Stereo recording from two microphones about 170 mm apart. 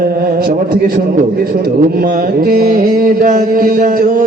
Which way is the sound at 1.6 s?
60° right (ahead or behind).